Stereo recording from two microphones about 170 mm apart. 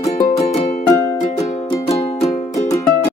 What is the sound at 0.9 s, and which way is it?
Music, 20° left (ahead or behind).